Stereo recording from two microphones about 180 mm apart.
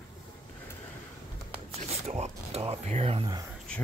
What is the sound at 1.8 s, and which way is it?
Speech, 35° right (ahead or behind).